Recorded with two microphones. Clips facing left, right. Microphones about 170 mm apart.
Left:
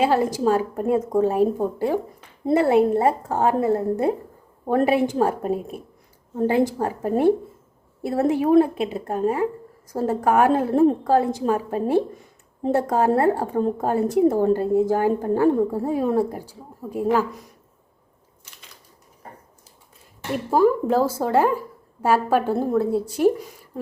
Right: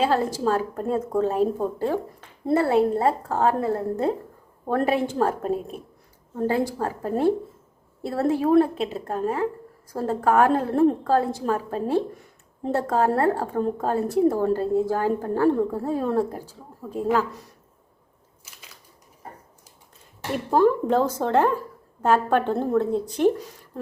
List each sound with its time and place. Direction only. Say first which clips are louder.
0.0 s a woman's voice: left 3 dB; 10° left (ahead or behind)
6.3 s a woman's voice: left 4 dB; 20° left (ahead or behind)
20.3 s a woman's voice: left 1 dB; 5° left (ahead or behind)